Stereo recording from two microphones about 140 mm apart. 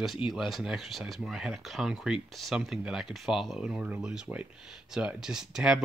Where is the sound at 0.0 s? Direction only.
Centre (ahead or behind).